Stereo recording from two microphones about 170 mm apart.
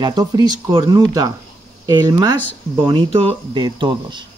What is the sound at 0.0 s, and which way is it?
Speech, 25° right (ahead or behind).